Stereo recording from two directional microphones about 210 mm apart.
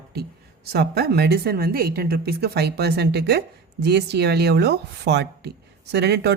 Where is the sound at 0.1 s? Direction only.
50° right (ahead or behind).